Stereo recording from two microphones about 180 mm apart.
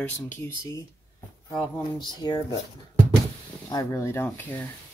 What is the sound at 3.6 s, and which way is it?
Speech, 20° left (ahead or behind).